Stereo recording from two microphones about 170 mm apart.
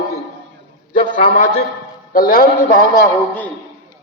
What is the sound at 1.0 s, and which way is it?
Speech, 30° left (ahead or behind).